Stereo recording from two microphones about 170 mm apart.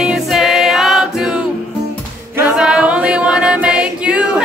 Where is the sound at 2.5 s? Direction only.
5° right (ahead or behind).